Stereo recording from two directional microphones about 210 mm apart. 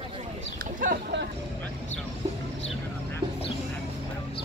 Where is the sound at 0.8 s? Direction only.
45° right (ahead or behind).